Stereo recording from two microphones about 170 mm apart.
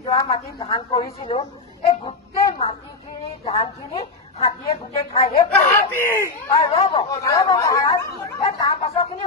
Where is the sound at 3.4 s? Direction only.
35° left (ahead or behind).